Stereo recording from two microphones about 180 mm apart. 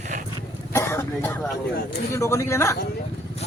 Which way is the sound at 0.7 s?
15° left (ahead or behind).